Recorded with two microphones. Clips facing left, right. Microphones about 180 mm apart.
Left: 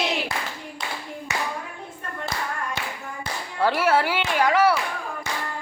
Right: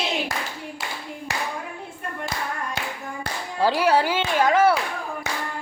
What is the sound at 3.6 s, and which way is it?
Speech, 15° right (ahead or behind).